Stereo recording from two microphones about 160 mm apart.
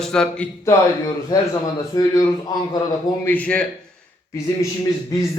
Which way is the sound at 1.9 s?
25° left (ahead or behind).